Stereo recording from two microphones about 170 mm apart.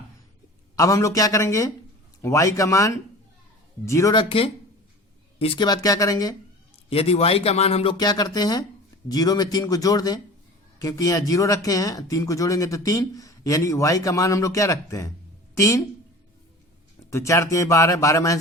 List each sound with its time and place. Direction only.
0.8 s speech: 20° left (ahead or behind)
4.1 s speech: 30° left (ahead or behind)
6.9 s speech: 35° left (ahead or behind)
7.9 s speech: 25° left (ahead or behind)
17.1 s speech: 15° left (ahead or behind)